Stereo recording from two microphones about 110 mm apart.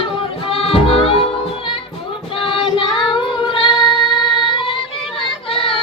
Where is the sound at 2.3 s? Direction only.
50° left (ahead or behind).